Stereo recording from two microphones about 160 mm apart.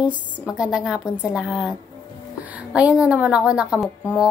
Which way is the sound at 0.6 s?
5° right (ahead or behind).